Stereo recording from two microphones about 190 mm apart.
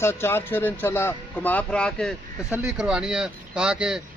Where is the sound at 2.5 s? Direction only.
5° right (ahead or behind).